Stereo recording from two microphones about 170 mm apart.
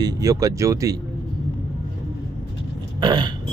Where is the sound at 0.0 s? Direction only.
20° right (ahead or behind).